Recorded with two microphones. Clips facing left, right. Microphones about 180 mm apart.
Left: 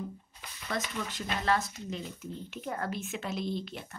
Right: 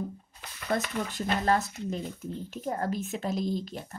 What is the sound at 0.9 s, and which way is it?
Speech, 40° right (ahead or behind).